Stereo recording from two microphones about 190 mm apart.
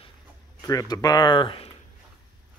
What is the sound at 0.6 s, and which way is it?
Speech, 20° left (ahead or behind).